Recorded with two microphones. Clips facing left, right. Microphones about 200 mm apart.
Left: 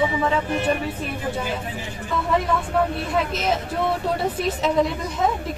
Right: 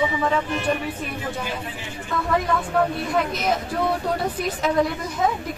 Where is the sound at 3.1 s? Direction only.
Centre (ahead or behind).